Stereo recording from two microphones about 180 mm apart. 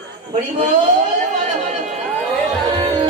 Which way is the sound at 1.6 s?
40° right (ahead or behind).